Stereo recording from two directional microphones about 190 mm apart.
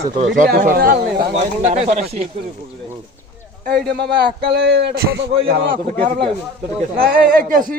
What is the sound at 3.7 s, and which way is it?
Speech, 60° right (ahead or behind).